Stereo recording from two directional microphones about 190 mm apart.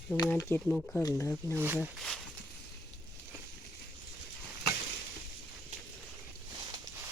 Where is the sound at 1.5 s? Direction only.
10° right (ahead or behind).